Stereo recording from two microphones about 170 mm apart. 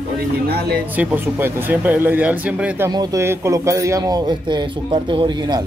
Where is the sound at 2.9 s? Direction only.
20° right (ahead or behind).